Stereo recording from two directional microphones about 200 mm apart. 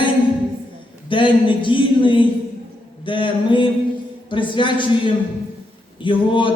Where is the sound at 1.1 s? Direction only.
25° left (ahead or behind).